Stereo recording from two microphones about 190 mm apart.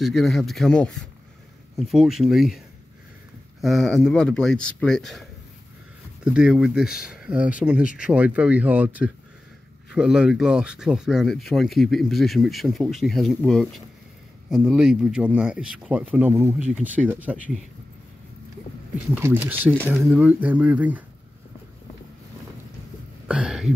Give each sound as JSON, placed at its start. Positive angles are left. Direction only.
{"t": 0.0, "sound": "speech", "side_deg": 0}
{"t": 3.6, "sound": "speech", "side_deg": 0}
{"t": 6.2, "sound": "speech", "side_deg": -5}
{"t": 19.1, "sound": "speech", "side_deg": -10}
{"t": 23.2, "sound": "a sound", "side_deg": -5}